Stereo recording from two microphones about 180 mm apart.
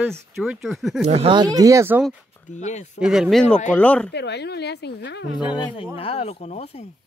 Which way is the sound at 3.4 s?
40° left (ahead or behind).